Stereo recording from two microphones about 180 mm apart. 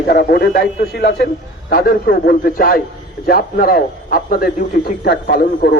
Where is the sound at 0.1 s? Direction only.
55° left (ahead or behind).